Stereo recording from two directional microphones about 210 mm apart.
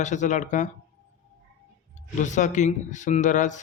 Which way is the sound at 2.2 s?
35° left (ahead or behind).